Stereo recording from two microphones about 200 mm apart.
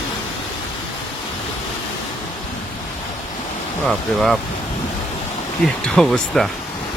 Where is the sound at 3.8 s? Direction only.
Centre (ahead or behind).